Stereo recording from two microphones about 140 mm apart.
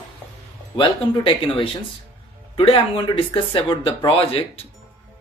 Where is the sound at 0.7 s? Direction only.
35° left (ahead or behind).